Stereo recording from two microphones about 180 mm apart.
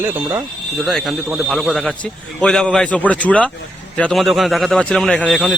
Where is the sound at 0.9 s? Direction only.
Centre (ahead or behind).